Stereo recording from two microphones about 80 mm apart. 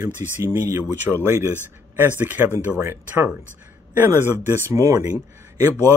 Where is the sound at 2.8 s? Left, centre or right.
Right.